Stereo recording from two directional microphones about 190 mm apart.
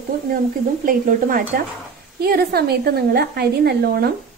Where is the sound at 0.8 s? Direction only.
45° right (ahead or behind).